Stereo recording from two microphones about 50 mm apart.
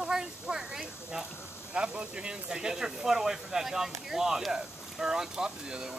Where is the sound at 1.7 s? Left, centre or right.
Right.